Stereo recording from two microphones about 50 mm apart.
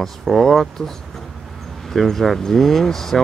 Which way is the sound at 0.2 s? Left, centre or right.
Centre.